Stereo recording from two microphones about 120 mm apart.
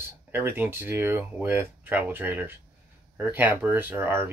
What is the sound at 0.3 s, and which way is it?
Speech, 15° right (ahead or behind).